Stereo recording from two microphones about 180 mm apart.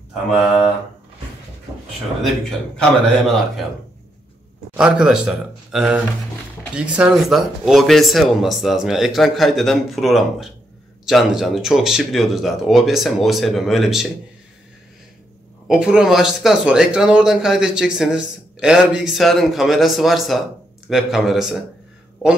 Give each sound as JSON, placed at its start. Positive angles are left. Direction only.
{"t": 2.8, "sound": "speech", "side_deg": 0}
{"t": 4.7, "sound": "speech", "side_deg": -5}
{"t": 15.6, "sound": "speech", "side_deg": -5}